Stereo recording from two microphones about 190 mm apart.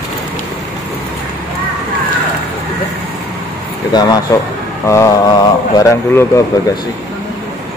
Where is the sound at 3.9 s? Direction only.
20° left (ahead or behind).